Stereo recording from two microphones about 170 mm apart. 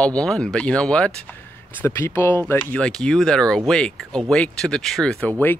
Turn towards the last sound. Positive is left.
turn(degrees=10)  # may be behind; listen again after turning